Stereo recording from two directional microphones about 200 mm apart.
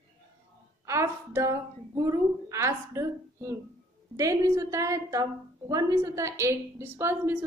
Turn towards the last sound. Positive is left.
turn(degrees=-10)  # may be behind; listen again after turning